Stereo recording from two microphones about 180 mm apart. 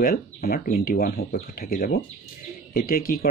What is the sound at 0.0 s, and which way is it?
Speech, 60° left (ahead or behind).